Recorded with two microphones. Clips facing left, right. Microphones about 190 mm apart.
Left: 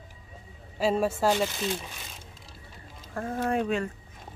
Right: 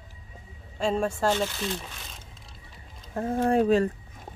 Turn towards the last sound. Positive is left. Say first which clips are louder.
# right 6 dB
turn(degrees=-35)  # may be behind; listen again after turning